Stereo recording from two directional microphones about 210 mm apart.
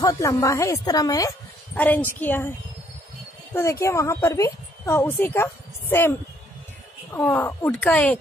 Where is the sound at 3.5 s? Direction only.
10° left (ahead or behind).